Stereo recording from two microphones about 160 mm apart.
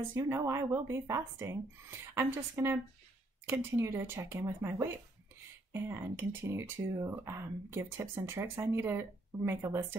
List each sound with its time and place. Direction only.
0.1 s speech: 15° right (ahead or behind)